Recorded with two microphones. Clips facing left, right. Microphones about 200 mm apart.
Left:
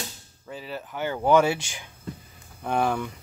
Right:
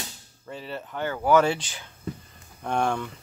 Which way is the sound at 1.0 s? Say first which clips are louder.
Left 1 dB; 20° left (ahead or behind).